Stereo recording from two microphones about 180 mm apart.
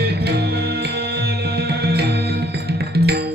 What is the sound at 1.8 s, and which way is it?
Music, 65° right (ahead or behind).